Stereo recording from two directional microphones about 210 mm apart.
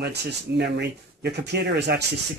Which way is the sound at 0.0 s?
50° right (ahead or behind).